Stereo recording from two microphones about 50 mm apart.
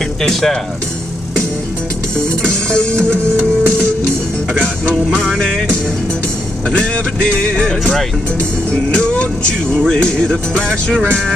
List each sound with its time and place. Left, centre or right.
0.2 s music: centre
2.4 s music: centre
7.3 s music: left